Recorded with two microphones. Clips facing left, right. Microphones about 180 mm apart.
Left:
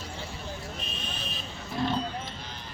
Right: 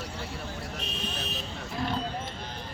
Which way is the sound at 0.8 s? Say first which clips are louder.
Right 3 dB; 70° right (ahead or behind).